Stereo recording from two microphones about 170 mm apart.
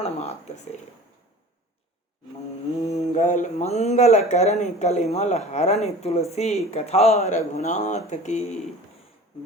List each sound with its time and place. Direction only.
2.9 s speech: 45° left (ahead or behind)